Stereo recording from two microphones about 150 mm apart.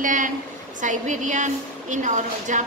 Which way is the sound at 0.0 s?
60° right (ahead or behind).